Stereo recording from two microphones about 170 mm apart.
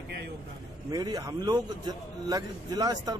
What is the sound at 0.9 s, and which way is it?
A man's voice, 20° right (ahead or behind).